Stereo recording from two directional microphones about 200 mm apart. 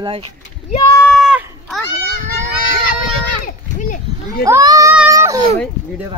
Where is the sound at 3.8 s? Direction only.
45° left (ahead or behind).